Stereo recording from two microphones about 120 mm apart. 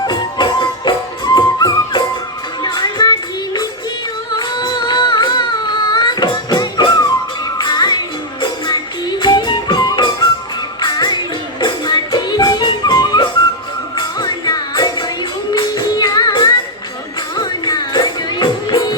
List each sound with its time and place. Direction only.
0.0 s music: 35° left (ahead or behind)